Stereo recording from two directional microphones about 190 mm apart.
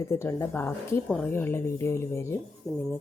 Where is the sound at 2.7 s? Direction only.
Centre (ahead or behind).